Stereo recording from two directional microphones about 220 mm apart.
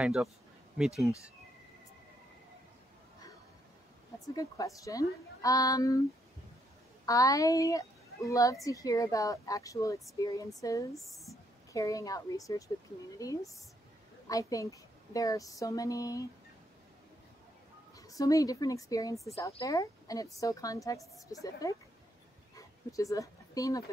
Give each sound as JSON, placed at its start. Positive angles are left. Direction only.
{"t": 0.0, "sound": "speech", "side_deg": 0}
{"t": 4.4, "sound": "a woman's voice", "side_deg": 15}
{"t": 7.1, "sound": "a woman's voice", "side_deg": 15}
{"t": 10.9, "sound": "speech", "side_deg": 0}
{"t": 11.7, "sound": "a woman's voice", "side_deg": 15}
{"t": 17.9, "sound": "a woman's voice", "side_deg": 15}